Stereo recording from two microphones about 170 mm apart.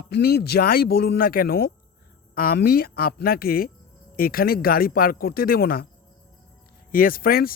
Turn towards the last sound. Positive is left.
turn(degrees=60)  # may be behind; listen again after turning